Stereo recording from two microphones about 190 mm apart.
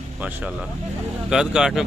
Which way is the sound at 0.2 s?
5° right (ahead or behind).